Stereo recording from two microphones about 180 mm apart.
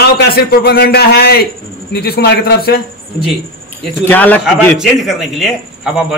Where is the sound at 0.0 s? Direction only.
65° left (ahead or behind).